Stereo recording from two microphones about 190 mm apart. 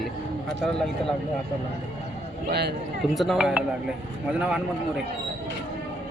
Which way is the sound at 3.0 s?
Centre (ahead or behind).